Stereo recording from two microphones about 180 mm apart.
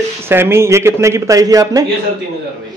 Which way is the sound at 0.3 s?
15° right (ahead or behind).